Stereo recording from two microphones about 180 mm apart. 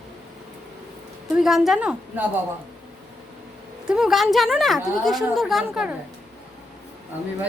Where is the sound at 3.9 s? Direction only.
5° right (ahead or behind).